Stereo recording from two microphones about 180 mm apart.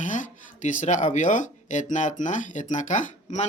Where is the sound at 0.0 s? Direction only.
45° left (ahead or behind).